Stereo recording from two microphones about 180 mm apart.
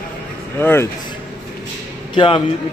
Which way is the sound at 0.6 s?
10° left (ahead or behind).